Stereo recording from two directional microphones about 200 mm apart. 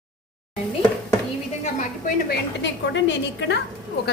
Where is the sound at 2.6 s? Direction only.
65° left (ahead or behind).